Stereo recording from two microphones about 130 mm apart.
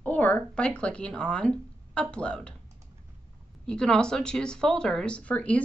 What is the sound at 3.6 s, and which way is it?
Speech, 5° left (ahead or behind).